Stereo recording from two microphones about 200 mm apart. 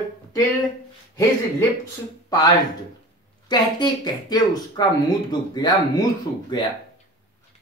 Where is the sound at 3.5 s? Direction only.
20° left (ahead or behind).